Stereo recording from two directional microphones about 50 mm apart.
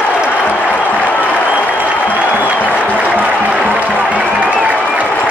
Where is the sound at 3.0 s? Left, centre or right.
Right.